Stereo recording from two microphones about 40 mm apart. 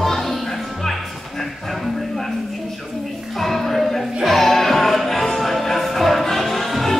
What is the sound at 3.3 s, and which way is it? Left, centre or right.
Music, centre.